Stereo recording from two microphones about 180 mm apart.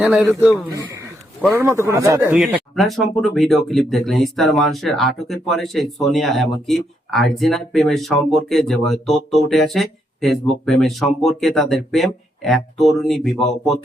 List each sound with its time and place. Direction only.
0.0 s speech: 5° right (ahead or behind)
1.5 s speech: 15° right (ahead or behind)
2.3 s speech: centre (ahead or behind)